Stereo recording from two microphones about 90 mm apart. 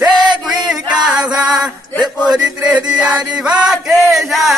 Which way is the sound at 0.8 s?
50° right (ahead or behind).